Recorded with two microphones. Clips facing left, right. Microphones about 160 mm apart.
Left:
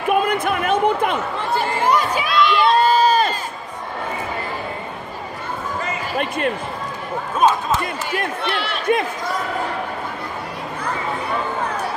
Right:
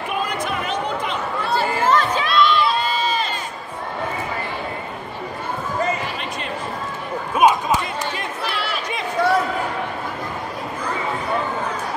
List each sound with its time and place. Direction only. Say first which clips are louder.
0.1 s a sound: left 7 dB; 55° left (ahead or behind)
1.6 s chatter: even; 15° left (ahead or behind)
2.8 s crowd: left 7 dB; 45° left (ahead or behind)
7.3 s basketball bounce: right 1 dB; 10° right (ahead or behind)
8.5 s run: left 2 dB; centre (ahead or behind)
9.2 s a sound: right 8 dB; 70° right (ahead or behind)